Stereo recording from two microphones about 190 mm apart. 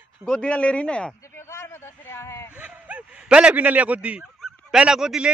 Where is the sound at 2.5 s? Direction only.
5° right (ahead or behind).